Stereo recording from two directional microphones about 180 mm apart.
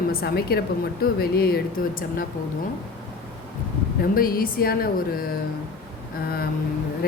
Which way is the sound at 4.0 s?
55° left (ahead or behind).